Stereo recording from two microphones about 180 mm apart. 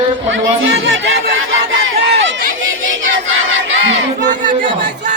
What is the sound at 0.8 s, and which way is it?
Music, 85° right.